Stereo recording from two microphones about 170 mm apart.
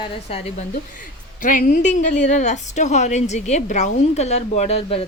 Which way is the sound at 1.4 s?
50° left (ahead or behind).